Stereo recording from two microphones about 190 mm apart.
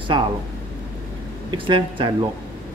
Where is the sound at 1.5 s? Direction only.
25° right (ahead or behind).